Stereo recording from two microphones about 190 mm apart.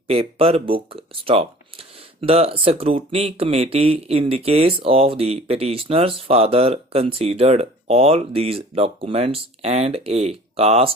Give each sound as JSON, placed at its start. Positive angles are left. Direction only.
{"t": 0.1, "sound": "speech", "side_deg": -30}